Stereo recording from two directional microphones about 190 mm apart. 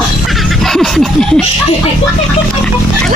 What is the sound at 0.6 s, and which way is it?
Snicker, centre (ahead or behind).